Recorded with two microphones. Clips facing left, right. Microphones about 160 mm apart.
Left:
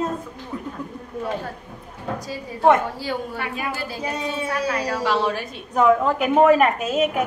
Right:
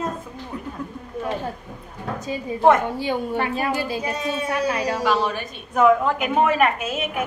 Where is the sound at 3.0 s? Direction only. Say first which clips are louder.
Right 4 dB; 20° right (ahead or behind).